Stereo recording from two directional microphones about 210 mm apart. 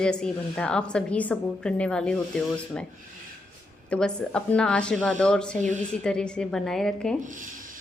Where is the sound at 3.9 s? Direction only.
5° left (ahead or behind).